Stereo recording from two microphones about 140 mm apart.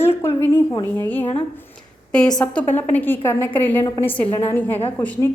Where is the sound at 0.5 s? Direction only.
25° left (ahead or behind).